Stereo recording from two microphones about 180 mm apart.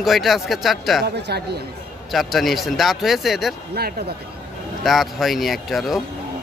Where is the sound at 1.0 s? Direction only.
65° right (ahead or behind).